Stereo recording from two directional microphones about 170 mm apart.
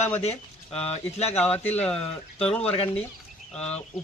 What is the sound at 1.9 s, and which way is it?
A man's voice, 5° left (ahead or behind).